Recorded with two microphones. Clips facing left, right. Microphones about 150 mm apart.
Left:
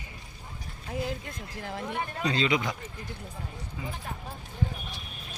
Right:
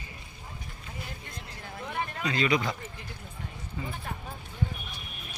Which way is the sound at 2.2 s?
25° left (ahead or behind).